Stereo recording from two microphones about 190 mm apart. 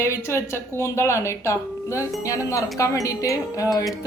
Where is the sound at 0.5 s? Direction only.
15° left (ahead or behind).